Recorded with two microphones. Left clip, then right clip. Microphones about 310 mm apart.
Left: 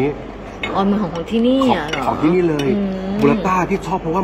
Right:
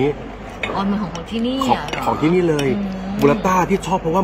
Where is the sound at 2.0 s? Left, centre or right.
Right.